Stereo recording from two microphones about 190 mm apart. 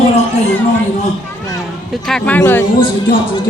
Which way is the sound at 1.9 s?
5° left (ahead or behind).